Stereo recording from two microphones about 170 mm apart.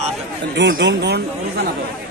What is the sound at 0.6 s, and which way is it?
Speech, 90° right.